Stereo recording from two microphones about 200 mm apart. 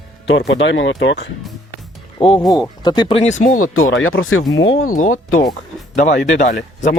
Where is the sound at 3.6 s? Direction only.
90° left.